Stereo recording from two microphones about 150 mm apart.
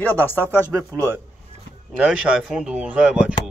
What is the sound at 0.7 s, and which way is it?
Speech, 20° right (ahead or behind).